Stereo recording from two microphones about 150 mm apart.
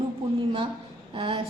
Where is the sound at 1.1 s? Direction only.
35° right (ahead or behind).